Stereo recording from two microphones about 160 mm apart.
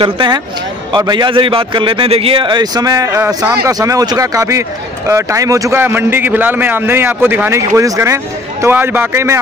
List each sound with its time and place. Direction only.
0.0 s a man's voice: 30° right (ahead or behind)